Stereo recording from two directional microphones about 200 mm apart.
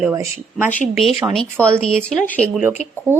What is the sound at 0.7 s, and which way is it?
Speech, 5° left (ahead or behind).